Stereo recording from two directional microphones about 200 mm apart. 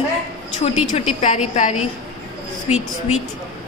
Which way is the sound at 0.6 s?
35° left (ahead or behind).